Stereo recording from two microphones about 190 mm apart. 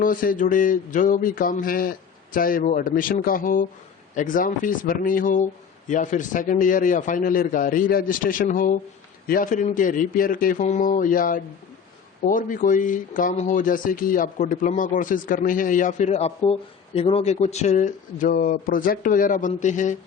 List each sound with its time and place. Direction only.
0.0 s speech: 45° left (ahead or behind)